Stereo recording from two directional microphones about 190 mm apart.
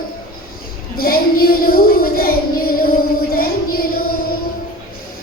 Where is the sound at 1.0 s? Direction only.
50° left (ahead or behind).